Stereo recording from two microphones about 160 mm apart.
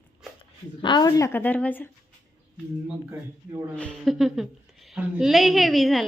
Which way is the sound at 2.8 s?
15° right (ahead or behind).